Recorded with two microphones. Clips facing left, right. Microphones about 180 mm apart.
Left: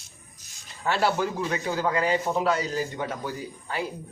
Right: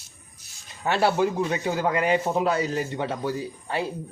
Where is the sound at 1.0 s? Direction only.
25° right (ahead or behind).